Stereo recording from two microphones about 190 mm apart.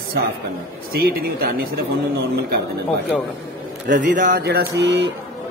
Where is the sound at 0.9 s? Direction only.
55° right (ahead or behind).